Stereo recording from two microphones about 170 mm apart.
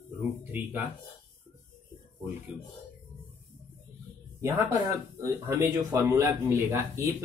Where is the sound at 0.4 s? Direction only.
10° right (ahead or behind).